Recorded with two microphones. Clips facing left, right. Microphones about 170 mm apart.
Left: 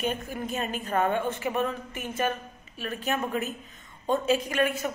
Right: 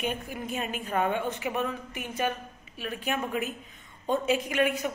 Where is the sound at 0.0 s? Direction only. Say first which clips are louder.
Left 2 dB; 10° right (ahead or behind).